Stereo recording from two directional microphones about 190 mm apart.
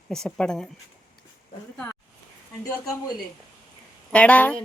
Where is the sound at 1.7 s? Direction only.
5° left (ahead or behind).